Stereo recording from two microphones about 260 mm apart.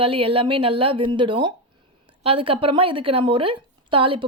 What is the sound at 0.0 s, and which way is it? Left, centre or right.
Speech, right.